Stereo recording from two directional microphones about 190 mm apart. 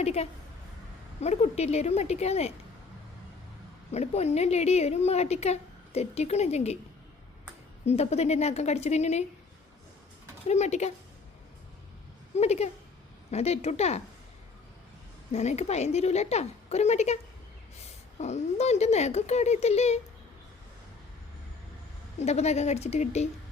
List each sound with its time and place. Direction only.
0.0 s a woman's voice: 35° left (ahead or behind)
3.9 s a woman's voice: 35° left (ahead or behind)
7.9 s a woman's voice: 35° left (ahead or behind)
10.4 s a woman's voice: 35° left (ahead or behind)
12.4 s a woman's voice: 35° left (ahead or behind)
15.3 s a woman's voice: 35° left (ahead or behind)
18.2 s a woman's voice: 35° left (ahead or behind)
22.2 s a woman's voice: 35° left (ahead or behind)